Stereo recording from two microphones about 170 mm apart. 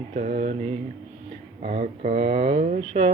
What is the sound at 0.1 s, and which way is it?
Speech, 45° right (ahead or behind).